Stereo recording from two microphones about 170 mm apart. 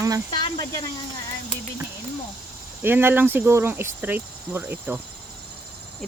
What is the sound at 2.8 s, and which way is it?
Speech, 10° right (ahead or behind).